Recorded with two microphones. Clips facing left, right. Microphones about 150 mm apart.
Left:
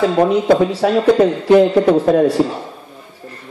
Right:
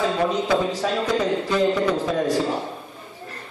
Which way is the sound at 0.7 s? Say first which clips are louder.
Left 10 dB; 60° left (ahead or behind).